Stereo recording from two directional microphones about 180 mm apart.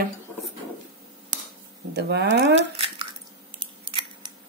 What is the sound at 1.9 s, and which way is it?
Speech, 65° right (ahead or behind).